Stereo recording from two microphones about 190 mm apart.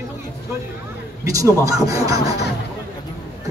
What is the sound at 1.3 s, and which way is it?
Speech, 15° right (ahead or behind).